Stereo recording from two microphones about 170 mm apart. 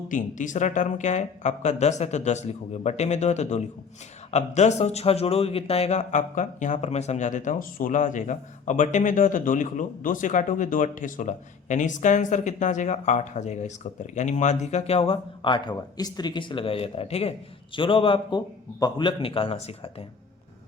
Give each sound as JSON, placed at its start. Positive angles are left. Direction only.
{"t": 0.1, "sound": "a man's voice", "side_deg": 50}